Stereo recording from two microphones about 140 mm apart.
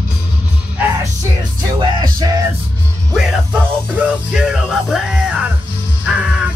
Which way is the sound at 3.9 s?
5° right (ahead or behind).